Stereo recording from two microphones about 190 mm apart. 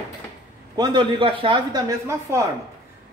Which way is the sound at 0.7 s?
25° right (ahead or behind).